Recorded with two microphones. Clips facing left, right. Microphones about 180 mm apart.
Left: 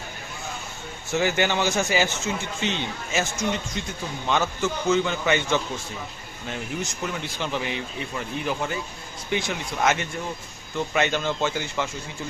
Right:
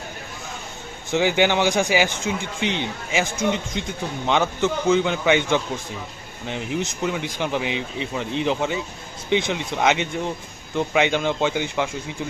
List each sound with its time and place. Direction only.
1.1 s speech: 15° right (ahead or behind)